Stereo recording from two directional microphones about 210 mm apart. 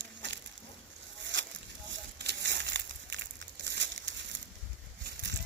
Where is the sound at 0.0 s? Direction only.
55° right (ahead or behind).